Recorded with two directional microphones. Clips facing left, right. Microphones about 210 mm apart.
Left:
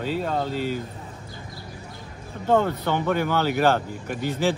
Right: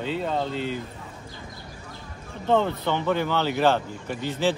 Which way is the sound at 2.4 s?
10° left (ahead or behind).